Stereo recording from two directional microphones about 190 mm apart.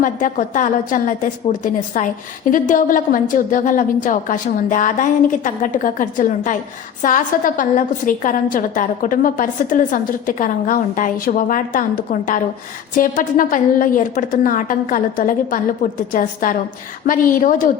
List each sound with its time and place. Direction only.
0.0 s a woman's voice: 45° left (ahead or behind)